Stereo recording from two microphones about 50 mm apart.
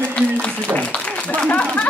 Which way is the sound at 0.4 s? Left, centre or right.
Left.